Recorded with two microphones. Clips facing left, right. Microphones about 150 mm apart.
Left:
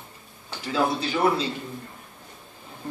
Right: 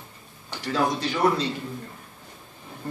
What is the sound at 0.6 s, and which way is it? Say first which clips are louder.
Speech: even; 5° left (ahead or behind).